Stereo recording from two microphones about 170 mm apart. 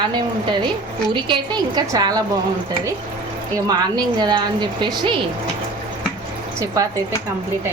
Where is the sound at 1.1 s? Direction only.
25° right (ahead or behind).